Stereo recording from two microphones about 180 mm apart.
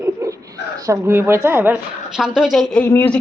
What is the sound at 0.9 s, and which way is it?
A woman's voice, 15° right (ahead or behind).